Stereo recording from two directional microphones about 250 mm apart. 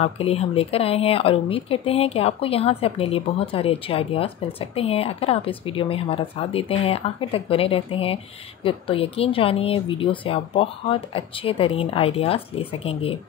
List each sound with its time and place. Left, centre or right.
0.0 s speech: left